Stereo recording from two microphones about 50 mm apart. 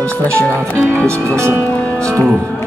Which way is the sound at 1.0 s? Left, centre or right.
Right.